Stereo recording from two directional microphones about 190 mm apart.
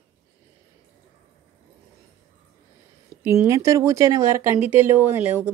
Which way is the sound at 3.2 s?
15° right (ahead or behind).